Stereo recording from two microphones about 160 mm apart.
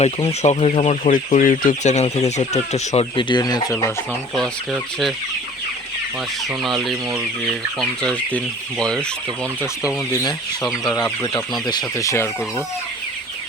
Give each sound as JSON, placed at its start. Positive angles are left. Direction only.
{"t": 0.4, "sound": "speech", "side_deg": 45}
{"t": 6.6, "sound": "speech", "side_deg": 0}
{"t": 8.8, "sound": "chicken", "side_deg": 5}
{"t": 9.8, "sound": "speech", "side_deg": 25}
{"t": 10.6, "sound": "speech", "side_deg": 0}
{"t": 10.9, "sound": "speech", "side_deg": 20}